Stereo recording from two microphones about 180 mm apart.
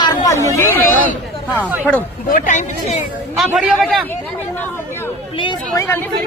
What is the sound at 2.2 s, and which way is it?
Speech, 50° left (ahead or behind).